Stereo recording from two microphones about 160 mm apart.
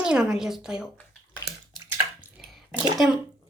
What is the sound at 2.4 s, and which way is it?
Bathtub, centre (ahead or behind).